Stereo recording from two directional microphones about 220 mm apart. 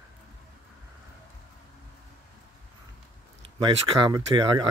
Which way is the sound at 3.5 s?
25° right (ahead or behind).